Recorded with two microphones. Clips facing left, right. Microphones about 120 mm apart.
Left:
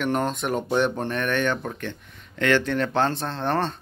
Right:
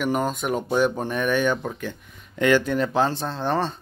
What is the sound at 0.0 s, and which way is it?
Speech, 5° right (ahead or behind).